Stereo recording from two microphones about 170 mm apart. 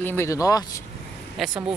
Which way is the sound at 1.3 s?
Centre (ahead or behind).